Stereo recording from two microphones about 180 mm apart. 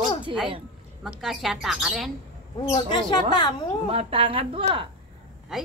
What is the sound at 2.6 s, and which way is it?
Speech, 20° left (ahead or behind).